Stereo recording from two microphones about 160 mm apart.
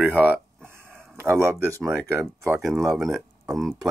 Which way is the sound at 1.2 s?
15° right (ahead or behind).